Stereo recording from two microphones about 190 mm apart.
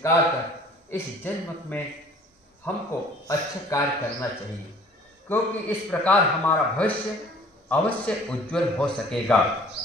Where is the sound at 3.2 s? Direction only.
15° left (ahead or behind).